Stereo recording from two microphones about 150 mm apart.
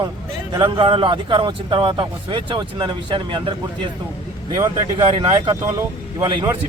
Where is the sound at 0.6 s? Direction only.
35° right (ahead or behind).